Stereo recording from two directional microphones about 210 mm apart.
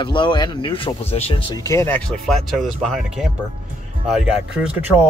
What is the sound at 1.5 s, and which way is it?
Speech, 15° left (ahead or behind).